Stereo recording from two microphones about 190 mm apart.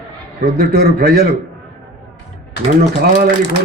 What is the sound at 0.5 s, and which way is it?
Speech, 55° right (ahead or behind).